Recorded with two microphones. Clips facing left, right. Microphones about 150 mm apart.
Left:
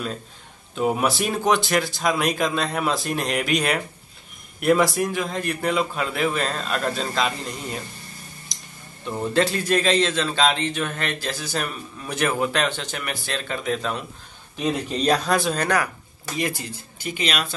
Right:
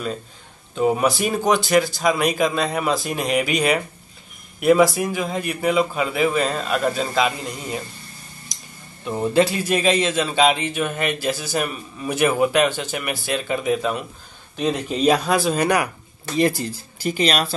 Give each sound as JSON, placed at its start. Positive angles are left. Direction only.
{"t": 0.7, "sound": "a man's voice", "side_deg": 0}
{"t": 9.0, "sound": "a man's voice", "side_deg": -10}
{"t": 16.3, "sound": "speech", "side_deg": -35}